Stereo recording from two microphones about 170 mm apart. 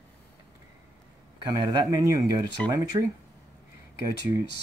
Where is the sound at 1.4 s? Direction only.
25° right (ahead or behind).